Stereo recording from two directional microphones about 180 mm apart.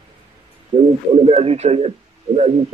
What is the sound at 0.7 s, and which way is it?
A man's voice, 40° right (ahead or behind).